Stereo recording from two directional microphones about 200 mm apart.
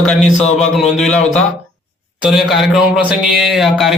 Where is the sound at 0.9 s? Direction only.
5° left (ahead or behind).